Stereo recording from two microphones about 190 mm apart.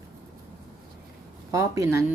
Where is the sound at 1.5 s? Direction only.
15° right (ahead or behind).